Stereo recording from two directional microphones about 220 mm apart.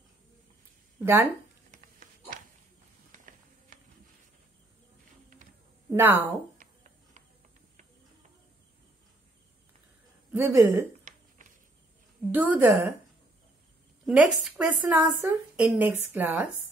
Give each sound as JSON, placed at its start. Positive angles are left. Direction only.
{"t": 1.0, "sound": "speech", "side_deg": -10}
{"t": 1.7, "sound": "dog", "side_deg": -40}
{"t": 3.1, "sound": "music", "side_deg": -35}
{"t": 5.9, "sound": "speech", "side_deg": -10}
{"t": 6.6, "sound": "a sound", "side_deg": -35}
{"t": 10.3, "sound": "speech", "side_deg": -10}
{"t": 12.3, "sound": "speech", "side_deg": -10}
{"t": 14.0, "sound": "speech", "side_deg": -5}